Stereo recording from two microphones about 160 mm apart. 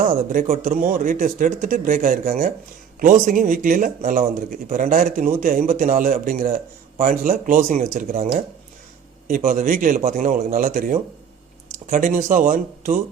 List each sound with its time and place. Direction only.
0.0 s speech: 60° right (ahead or behind)
9.2 s speech: 60° right (ahead or behind)